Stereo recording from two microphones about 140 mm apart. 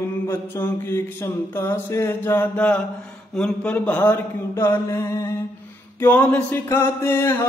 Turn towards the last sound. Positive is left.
turn(degrees=15)  # may be behind; listen again after turning